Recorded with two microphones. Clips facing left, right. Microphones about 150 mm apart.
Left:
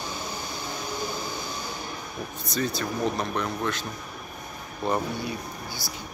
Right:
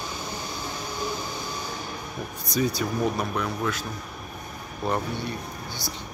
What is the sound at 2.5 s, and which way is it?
Speech, 10° right (ahead or behind).